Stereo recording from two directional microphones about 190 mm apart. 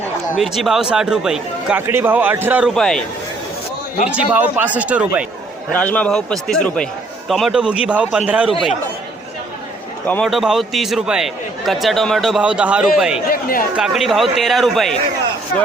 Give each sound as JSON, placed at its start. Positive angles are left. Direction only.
{"t": 0.3, "sound": "a man's voice", "side_deg": 0}
{"t": 4.3, "sound": "a man's voice", "side_deg": -10}
{"t": 5.7, "sound": "a man's voice", "side_deg": 5}
{"t": 10.1, "sound": "a man's voice", "side_deg": 5}
{"t": 13.3, "sound": "speech", "side_deg": 50}
{"t": 13.7, "sound": "a man's voice", "side_deg": 0}